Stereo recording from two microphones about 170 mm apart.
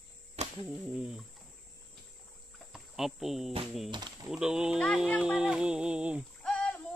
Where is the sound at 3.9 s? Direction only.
25° right (ahead or behind).